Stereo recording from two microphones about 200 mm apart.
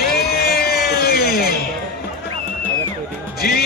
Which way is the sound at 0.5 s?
50° left (ahead or behind).